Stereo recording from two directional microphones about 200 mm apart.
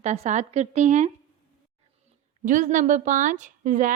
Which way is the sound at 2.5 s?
40° right (ahead or behind).